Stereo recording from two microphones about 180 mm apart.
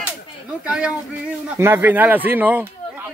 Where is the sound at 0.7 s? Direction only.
5° right (ahead or behind).